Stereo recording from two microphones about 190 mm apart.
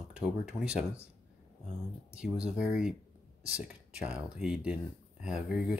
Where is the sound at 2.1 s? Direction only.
5° right (ahead or behind).